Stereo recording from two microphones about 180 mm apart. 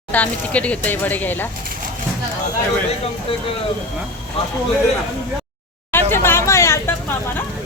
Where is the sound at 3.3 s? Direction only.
30° left (ahead or behind).